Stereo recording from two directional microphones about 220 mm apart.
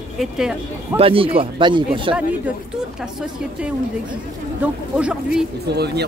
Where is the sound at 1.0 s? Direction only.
25° right (ahead or behind).